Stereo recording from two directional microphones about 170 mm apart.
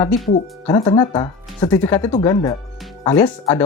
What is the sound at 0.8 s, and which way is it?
Speech, 25° left (ahead or behind).